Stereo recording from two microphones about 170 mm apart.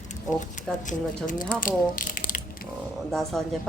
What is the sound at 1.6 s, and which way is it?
Mechanisms, 50° left (ahead or behind).